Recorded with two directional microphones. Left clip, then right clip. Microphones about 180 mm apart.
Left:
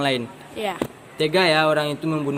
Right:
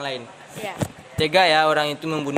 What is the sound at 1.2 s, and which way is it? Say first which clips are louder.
Speech: right 2 dB; 55° right (ahead or behind).